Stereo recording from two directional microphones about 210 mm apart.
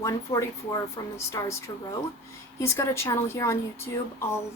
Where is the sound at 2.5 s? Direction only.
15° left (ahead or behind).